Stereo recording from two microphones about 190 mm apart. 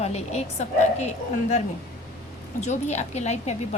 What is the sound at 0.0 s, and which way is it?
A woman's voice, 35° left (ahead or behind).